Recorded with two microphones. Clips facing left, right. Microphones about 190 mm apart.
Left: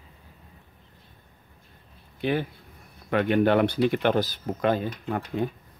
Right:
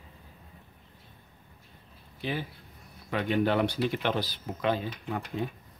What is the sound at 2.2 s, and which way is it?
Speech, 60° left (ahead or behind).